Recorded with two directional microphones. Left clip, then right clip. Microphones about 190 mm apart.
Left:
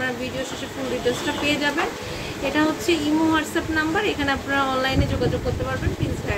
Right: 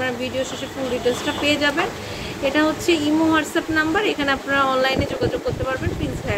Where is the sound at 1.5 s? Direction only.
15° right (ahead or behind).